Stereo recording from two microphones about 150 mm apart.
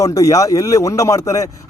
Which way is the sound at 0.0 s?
20° left (ahead or behind).